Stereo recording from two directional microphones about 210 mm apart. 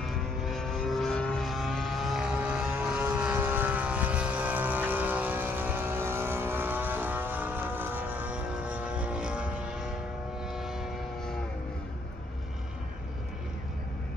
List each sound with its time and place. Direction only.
0.0 s vehicle: centre (ahead or behind)
10.4 s train: centre (ahead or behind)